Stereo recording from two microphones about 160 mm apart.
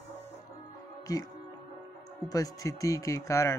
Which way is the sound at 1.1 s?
20° left (ahead or behind).